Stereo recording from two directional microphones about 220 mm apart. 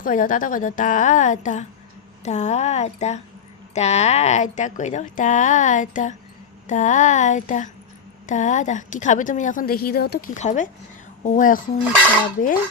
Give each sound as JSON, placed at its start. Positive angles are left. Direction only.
{"t": 0.0, "sound": "a woman's voice", "side_deg": 35}
{"t": 10.3, "sound": "a woman's voice", "side_deg": 35}